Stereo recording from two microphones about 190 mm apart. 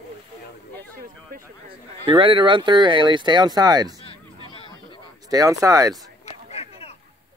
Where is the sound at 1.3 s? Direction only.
50° right (ahead or behind).